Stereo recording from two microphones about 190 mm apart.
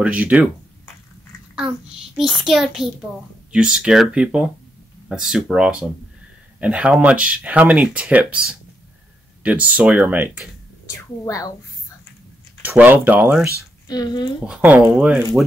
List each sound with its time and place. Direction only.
0.0 s speech: 5° right (ahead or behind)
2.1 s speech: centre (ahead or behind)
11.0 s speech: 15° left (ahead or behind)
12.6 s speech: 10° right (ahead or behind)
13.6 s speech: 20° left (ahead or behind)
14.4 s speech: 5° right (ahead or behind)